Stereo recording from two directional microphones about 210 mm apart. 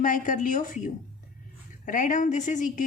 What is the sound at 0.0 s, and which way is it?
A woman's voice, 40° left (ahead or behind).